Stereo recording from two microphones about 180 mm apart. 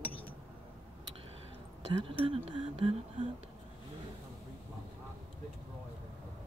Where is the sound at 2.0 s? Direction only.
30° right (ahead or behind).